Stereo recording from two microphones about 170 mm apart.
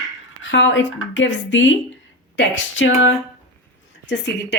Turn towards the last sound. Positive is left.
turn(degrees=90)